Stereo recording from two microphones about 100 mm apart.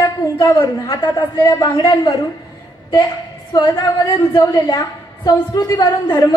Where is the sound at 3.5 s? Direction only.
45° left (ahead or behind).